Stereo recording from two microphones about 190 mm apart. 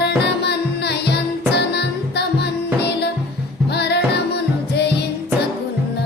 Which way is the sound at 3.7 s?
60° left (ahead or behind).